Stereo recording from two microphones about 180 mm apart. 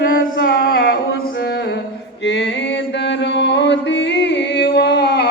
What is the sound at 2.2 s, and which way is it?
Mantra, 80° left.